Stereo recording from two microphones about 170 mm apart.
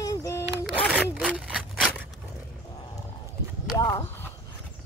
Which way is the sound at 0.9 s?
5° right (ahead or behind).